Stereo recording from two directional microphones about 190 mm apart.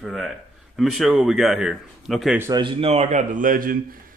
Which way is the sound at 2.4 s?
20° right (ahead or behind).